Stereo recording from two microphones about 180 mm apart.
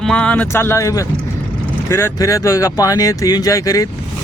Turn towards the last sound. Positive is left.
turn(degrees=20)  # may be behind; listen again after turning